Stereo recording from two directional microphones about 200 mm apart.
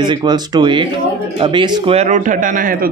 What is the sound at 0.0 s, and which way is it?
A man's voice, 20° right (ahead or behind).